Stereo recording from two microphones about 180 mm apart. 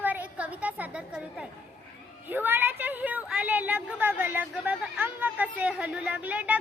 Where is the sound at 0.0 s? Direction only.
10° right (ahead or behind).